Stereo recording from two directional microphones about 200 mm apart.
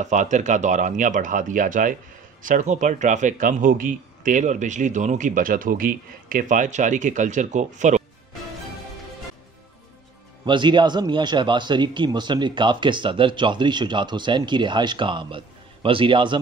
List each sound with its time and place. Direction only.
0.0 s speech: 35° right (ahead or behind)
10.4 s a man's voice: 25° right (ahead or behind)